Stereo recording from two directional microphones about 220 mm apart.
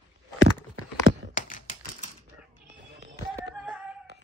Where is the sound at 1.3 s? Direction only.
35° left (ahead or behind).